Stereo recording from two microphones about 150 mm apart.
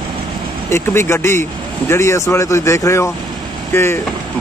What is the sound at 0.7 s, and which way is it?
Speech, 15° left (ahead or behind).